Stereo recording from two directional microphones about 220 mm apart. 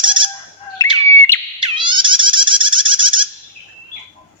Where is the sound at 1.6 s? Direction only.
20° right (ahead or behind).